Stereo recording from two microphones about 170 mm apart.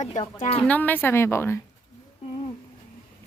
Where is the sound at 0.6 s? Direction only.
10° left (ahead or behind).